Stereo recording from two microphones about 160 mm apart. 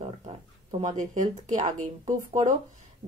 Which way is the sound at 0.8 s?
50° right (ahead or behind).